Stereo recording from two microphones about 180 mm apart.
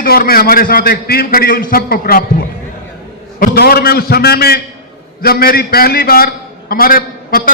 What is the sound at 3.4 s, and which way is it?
A man's voice, 60° left (ahead or behind).